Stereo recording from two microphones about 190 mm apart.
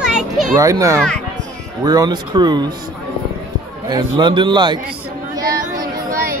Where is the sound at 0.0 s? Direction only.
5° right (ahead or behind).